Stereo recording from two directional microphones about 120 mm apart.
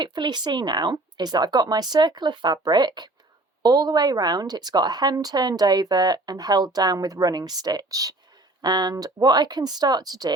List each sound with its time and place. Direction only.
0.0 s speech: 40° right (ahead or behind)